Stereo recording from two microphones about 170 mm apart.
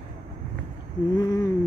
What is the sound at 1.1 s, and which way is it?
Speech, 20° left (ahead or behind).